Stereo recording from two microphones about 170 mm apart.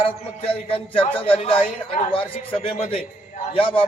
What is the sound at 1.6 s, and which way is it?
Speech, 55° left (ahead or behind).